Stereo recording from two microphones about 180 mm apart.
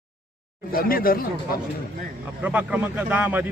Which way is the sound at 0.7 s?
55° left (ahead or behind).